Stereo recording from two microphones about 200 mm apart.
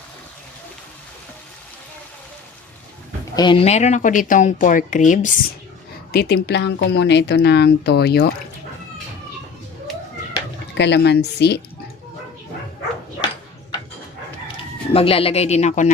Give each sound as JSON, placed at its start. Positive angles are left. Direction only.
{"t": 3.3, "sound": "speech", "side_deg": 25}
{"t": 6.1, "sound": "speech", "side_deg": 55}
{"t": 10.8, "sound": "speech", "side_deg": 60}
{"t": 14.9, "sound": "speech", "side_deg": 30}